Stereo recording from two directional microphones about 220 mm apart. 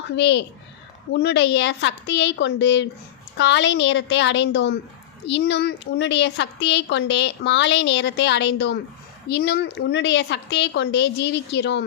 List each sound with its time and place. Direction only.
0.2 s a child's voice: 50° left (ahead or behind)